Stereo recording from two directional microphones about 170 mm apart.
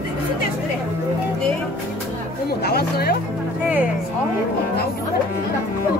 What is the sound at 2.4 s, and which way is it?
Speech, 65° left (ahead or behind).